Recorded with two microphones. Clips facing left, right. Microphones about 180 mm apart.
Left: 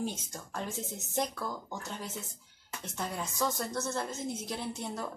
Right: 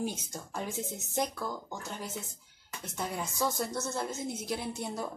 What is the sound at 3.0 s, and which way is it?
A woman's voice, 5° right (ahead or behind).